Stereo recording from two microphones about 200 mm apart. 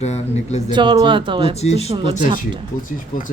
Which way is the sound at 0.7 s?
25° right (ahead or behind).